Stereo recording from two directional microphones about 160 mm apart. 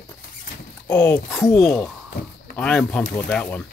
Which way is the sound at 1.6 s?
5° left (ahead or behind).